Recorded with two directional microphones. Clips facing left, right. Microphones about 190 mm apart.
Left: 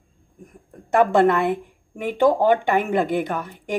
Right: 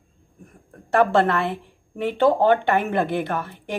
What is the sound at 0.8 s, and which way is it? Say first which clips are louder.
Speech: left 2 dB; 15° left (ahead or behind).